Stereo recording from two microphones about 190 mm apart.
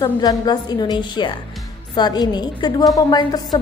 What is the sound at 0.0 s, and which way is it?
A woman's voice, 20° left (ahead or behind).